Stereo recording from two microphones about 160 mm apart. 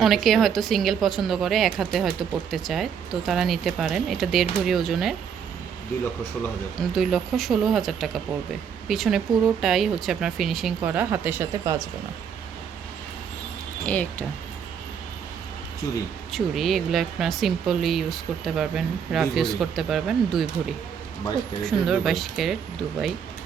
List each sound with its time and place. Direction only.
0.0 s a woman's voice: centre (ahead or behind)
6.7 s a woman's voice: centre (ahead or behind)
10.8 s speech: 10° right (ahead or behind)
11.6 s speech: 20° right (ahead or behind)
13.8 s speech: 10° left (ahead or behind)
16.3 s a woman's voice: centre (ahead or behind)
21.6 s a woman's voice: centre (ahead or behind)